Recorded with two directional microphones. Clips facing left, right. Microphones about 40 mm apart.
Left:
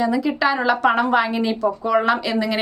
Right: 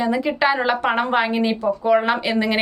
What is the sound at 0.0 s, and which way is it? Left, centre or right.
A woman's voice, right.